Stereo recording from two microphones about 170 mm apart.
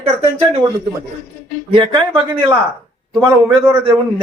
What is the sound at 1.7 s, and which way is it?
Speech, 30° right (ahead or behind).